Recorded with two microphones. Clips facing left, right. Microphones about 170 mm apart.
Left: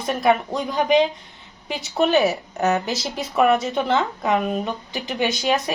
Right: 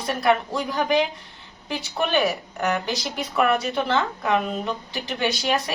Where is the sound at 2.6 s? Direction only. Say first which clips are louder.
Left 4 dB; 20° left (ahead or behind).